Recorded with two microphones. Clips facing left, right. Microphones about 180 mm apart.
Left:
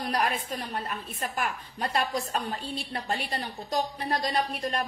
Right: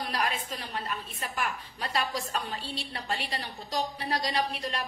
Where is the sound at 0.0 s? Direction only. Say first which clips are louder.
Left 3 dB; 45° left (ahead or behind).